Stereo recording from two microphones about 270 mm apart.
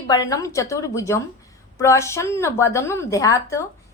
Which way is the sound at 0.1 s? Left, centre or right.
Centre.